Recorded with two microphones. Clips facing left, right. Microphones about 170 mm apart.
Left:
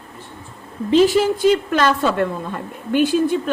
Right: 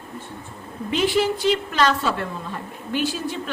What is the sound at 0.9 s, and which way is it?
A woman's voice, 40° left (ahead or behind).